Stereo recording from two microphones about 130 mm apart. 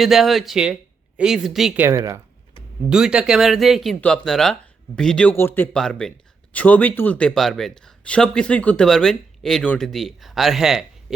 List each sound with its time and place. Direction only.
0.0 s speech: centre (ahead or behind)
1.7 s speech: 20° right (ahead or behind)
2.9 s speech: 5° right (ahead or behind)
5.3 s a man's voice: 15° left (ahead or behind)
5.7 s speech: 5° left (ahead or behind)